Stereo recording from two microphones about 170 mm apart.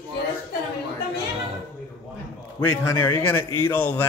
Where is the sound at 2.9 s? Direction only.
15° left (ahead or behind).